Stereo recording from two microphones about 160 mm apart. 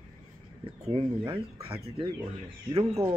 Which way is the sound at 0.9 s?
35° right (ahead or behind).